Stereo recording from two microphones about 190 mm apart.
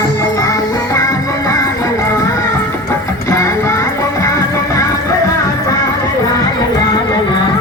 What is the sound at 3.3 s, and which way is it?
Music, 15° left (ahead or behind).